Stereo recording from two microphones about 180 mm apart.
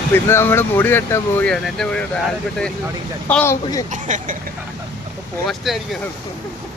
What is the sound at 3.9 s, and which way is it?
Speech, 45° right (ahead or behind).